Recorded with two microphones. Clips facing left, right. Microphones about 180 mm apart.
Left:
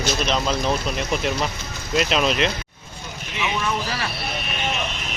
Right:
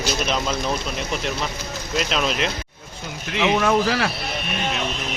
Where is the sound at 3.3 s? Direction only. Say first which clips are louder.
Right 7 dB; 70° right (ahead or behind).